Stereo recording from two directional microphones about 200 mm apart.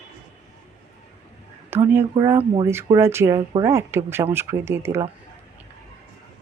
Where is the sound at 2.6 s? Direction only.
15° right (ahead or behind).